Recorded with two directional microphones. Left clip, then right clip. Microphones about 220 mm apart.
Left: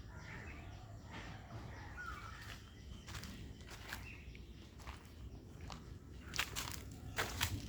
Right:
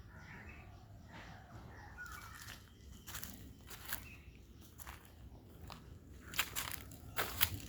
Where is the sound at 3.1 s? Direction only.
50° right (ahead or behind).